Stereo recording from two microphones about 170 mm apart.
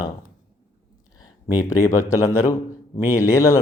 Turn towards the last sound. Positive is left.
turn(degrees=20)  # may be behind; listen again after turning